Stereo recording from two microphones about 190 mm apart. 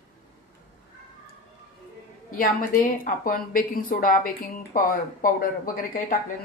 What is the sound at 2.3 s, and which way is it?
A woman's voice, 45° left (ahead or behind).